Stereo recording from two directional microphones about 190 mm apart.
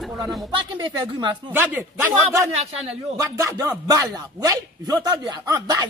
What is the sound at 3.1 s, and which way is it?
A man's voice, 15° right (ahead or behind).